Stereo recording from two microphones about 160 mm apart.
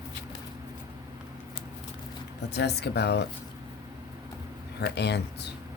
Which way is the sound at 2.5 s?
90° left.